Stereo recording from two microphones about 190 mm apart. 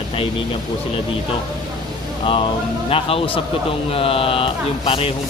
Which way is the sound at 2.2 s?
25° left (ahead or behind).